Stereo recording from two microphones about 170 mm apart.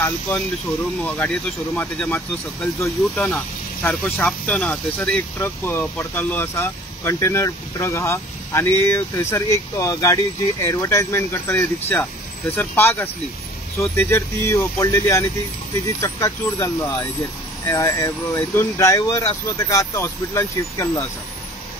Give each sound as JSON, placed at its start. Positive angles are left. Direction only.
{"t": 1.0, "sound": "speech", "side_deg": 10}